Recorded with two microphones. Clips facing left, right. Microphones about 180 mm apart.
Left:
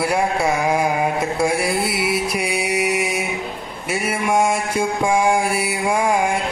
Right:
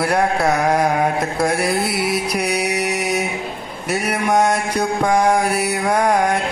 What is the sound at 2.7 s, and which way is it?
Mantra, 45° right (ahead or behind).